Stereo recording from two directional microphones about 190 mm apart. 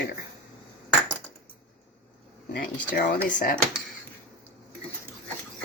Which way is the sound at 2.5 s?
50° left (ahead or behind).